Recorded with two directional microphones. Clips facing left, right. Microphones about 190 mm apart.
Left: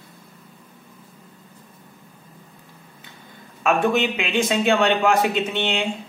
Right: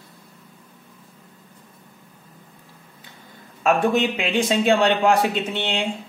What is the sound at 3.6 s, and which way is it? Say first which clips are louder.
Speech: right 1 dB; 35° right (ahead or behind).